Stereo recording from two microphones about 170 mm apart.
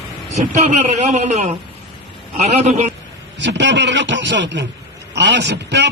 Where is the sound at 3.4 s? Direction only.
90° right.